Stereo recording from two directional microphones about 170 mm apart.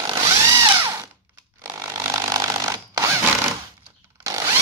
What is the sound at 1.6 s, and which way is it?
Chainsaw, 15° right (ahead or behind).